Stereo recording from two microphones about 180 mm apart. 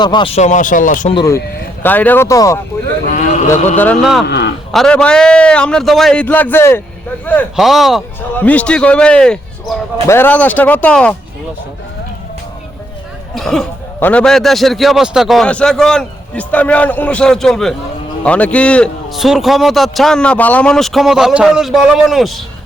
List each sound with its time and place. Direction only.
0.0 s speech: 25° left (ahead or behind); by 1.1 s 45° left (ahead or behind)
1.1 s speech: 20° left (ahead or behind)
1.8 s speech: 10° left (ahead or behind)
3.1 s speech: 45° left (ahead or behind)
4.0 s a man's voice: centre (ahead or behind)
4.3 s speech: 70° left (ahead or behind)
4.7 s a man's voice: 5° left (ahead or behind)
7.5 s a man's voice: centre (ahead or behind)
13.3 s a man's voice: centre (ahead or behind)